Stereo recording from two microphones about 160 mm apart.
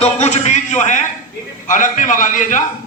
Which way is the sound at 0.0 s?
45° left (ahead or behind).